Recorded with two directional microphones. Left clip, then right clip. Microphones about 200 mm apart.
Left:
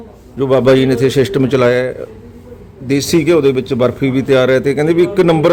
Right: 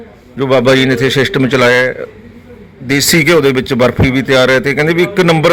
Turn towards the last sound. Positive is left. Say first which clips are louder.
# right 1 dB
turn(degrees=5)  # may be behind; listen again after turning